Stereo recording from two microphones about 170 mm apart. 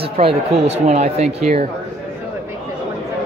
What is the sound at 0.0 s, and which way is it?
Speech, 35° right (ahead or behind).